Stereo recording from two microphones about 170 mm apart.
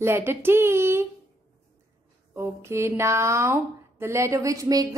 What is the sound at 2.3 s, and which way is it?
Speech, 15° right (ahead or behind).